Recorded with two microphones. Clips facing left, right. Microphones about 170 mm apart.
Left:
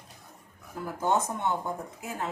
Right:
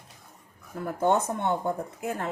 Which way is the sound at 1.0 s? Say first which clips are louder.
Right 3 dB; 60° right (ahead or behind).